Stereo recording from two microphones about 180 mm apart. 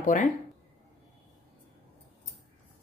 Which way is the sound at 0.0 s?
45° left (ahead or behind).